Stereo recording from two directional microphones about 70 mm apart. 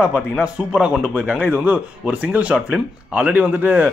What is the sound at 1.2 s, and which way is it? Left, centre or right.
Speech, right.